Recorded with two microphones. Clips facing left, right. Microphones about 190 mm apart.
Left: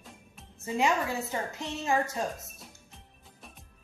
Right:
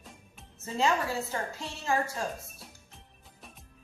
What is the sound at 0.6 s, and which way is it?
A woman's voice, 15° left (ahead or behind).